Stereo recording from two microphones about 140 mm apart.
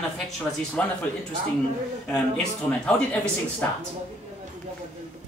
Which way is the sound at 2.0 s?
5° left (ahead or behind).